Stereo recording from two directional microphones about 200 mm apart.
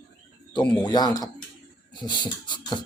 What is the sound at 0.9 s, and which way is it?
Speech, 20° left (ahead or behind).